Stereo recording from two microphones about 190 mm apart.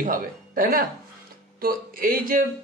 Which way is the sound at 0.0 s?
45° right (ahead or behind).